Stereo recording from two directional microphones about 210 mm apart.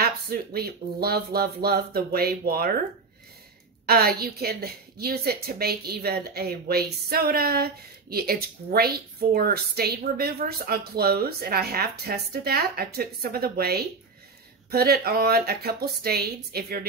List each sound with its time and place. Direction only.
0.0 s a woman's voice: 45° right (ahead or behind)
3.8 s a woman's voice: 50° right (ahead or behind)